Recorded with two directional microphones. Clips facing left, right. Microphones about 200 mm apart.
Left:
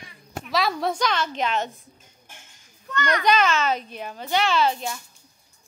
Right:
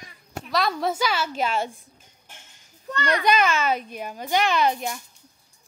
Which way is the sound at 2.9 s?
30° right (ahead or behind).